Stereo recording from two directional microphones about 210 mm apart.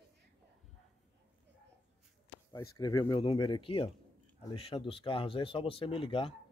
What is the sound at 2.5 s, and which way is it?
Speech, 15° left (ahead or behind).